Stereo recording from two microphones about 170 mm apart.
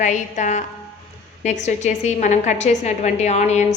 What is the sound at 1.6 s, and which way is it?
A woman's voice, 40° left (ahead or behind).